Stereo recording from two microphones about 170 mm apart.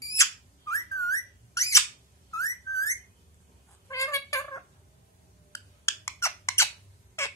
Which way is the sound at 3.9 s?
15° left (ahead or behind).